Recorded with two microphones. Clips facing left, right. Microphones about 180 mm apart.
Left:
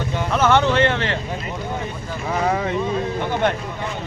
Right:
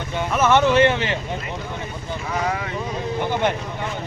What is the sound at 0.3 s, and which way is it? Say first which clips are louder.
Speech: right 1 dB; 10° right (ahead or behind).